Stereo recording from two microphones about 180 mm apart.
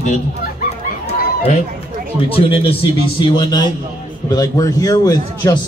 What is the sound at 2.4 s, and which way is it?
A man's voice, 30° left (ahead or behind).